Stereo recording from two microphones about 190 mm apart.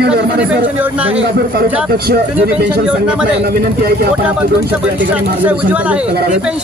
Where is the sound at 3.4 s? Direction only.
55° right (ahead or behind).